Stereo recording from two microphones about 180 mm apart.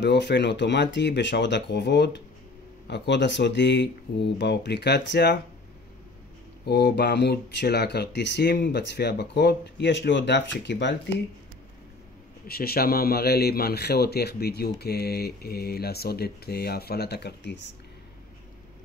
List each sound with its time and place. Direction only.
0.0 s speech: 70° left (ahead or behind)
6.6 s speech: 65° left (ahead or behind)
12.4 s speech: 60° left (ahead or behind)